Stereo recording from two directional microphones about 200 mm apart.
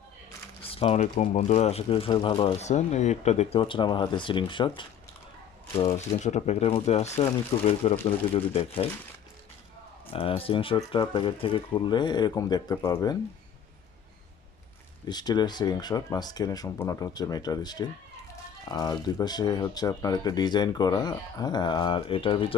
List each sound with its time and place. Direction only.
0.6 s speech: 30° left (ahead or behind)
10.1 s speech: 25° left (ahead or behind)
15.0 s speech: 20° left (ahead or behind)